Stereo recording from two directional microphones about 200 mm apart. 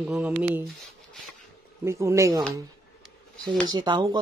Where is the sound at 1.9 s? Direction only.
15° right (ahead or behind).